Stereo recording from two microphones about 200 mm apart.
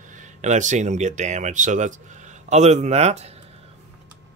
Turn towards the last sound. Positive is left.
turn(degrees=-30)  # may be behind; listen again after turning